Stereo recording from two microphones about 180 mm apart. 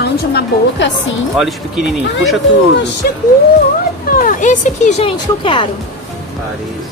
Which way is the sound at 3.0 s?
55° left (ahead or behind).